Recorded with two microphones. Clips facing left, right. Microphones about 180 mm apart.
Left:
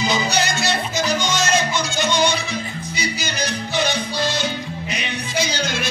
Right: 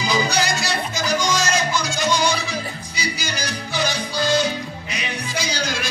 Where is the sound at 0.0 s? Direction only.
25° left (ahead or behind).